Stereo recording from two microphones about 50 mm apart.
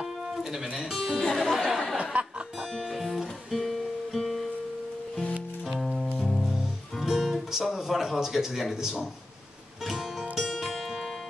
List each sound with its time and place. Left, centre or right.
0.4 s speech: centre
1.2 s music: centre
3.0 s music: centre
6.1 s music: centre
7.6 s a man's voice: centre
9.8 s music: centre